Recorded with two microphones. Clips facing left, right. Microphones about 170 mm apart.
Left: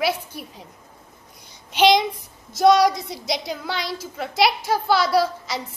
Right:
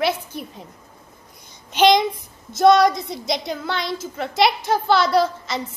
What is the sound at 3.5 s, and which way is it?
A woman's voice, 5° left (ahead or behind).